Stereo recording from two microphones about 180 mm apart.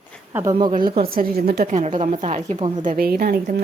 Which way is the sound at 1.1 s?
55° right (ahead or behind).